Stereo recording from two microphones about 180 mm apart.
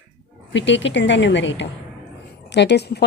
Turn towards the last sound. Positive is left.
turn(degrees=65)  # may be behind; listen again after turning